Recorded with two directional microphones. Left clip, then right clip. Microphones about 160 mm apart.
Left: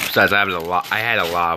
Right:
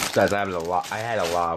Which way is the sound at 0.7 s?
30° left (ahead or behind).